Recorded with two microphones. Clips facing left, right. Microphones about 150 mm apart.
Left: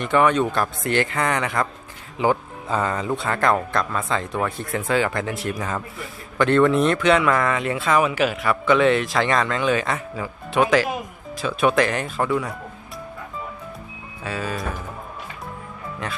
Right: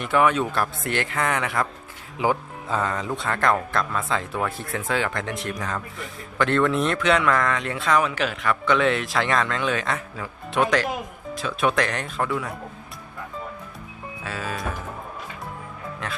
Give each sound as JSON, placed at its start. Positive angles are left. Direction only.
{"t": 0.0, "sound": "speech", "side_deg": -5}
{"t": 14.3, "sound": "speech", "side_deg": 0}